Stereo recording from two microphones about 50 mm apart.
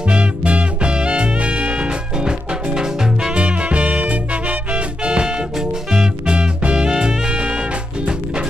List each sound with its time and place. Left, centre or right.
0.1 s music: right
3.3 s swing music: right
5.6 s music: centre